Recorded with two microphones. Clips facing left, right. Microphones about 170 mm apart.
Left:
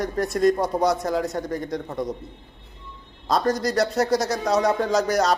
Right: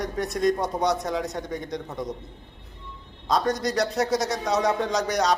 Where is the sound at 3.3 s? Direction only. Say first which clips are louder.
Left 2 dB; centre (ahead or behind).